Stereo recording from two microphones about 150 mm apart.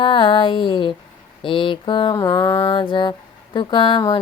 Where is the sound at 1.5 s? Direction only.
35° left (ahead or behind).